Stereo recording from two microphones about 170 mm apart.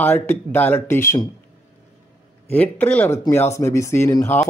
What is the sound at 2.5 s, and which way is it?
Speech, 10° left (ahead or behind).